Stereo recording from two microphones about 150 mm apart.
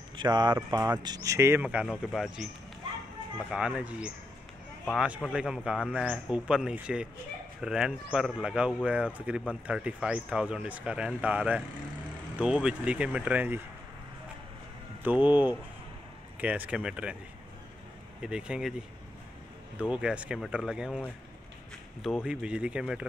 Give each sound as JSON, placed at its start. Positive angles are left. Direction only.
{"t": 0.1, "sound": "speech", "side_deg": -30}
{"t": 3.4, "sound": "a man's voice", "side_deg": -5}
{"t": 15.0, "sound": "speech", "side_deg": -10}
{"t": 18.2, "sound": "a man's voice", "side_deg": -5}
{"t": 19.8, "sound": "a man's voice", "side_deg": -5}
{"t": 22.0, "sound": "speech", "side_deg": -5}